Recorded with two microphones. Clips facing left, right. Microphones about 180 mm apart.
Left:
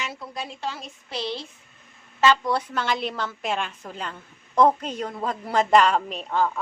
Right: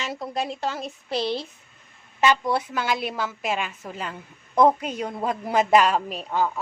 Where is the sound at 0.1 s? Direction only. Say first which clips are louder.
Right 6 dB; 40° right (ahead or behind).